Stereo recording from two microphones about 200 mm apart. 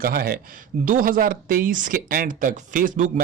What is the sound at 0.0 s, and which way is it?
Speech, 50° right (ahead or behind).